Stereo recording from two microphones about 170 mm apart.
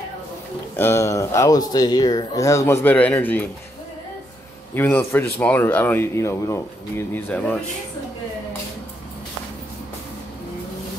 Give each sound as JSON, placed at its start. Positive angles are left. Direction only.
{"t": 0.7, "sound": "speech", "side_deg": 15}
{"t": 4.7, "sound": "speech", "side_deg": 10}